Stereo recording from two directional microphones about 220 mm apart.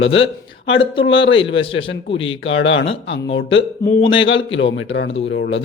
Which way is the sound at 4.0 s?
25° left (ahead or behind).